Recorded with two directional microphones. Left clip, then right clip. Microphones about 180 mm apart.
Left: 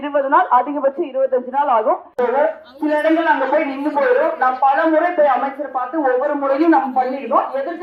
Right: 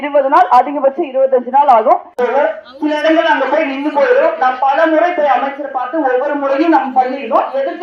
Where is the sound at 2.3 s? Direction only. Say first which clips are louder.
Right 3 dB; 50° right (ahead or behind).